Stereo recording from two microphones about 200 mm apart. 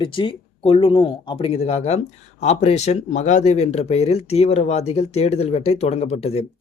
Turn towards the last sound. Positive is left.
turn(degrees=30)  # may be behind; listen again after turning